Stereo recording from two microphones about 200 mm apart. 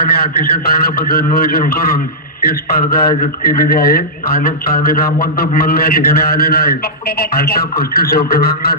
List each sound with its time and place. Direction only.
0.2 s speech: 50° left (ahead or behind)